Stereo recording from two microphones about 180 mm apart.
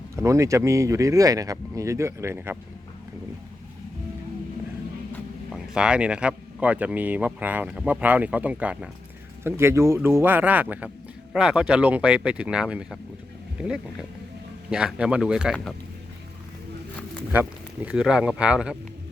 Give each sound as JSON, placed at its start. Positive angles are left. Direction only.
{"t": 0.2, "sound": "speech", "side_deg": -15}
{"t": 5.5, "sound": "speech", "side_deg": -5}
{"t": 17.8, "sound": "speech", "side_deg": -5}